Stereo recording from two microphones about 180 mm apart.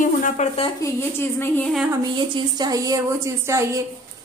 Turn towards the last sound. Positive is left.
turn(degrees=-15)  # may be behind; listen again after turning